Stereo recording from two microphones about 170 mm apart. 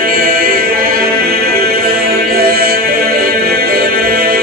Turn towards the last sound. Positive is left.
turn(degrees=-60)  # may be behind; listen again after turning